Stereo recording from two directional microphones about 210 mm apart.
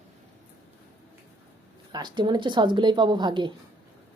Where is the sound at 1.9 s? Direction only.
20° right (ahead or behind).